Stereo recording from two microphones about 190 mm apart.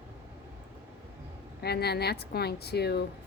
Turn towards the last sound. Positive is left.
turn(degrees=60)  # may be behind; listen again after turning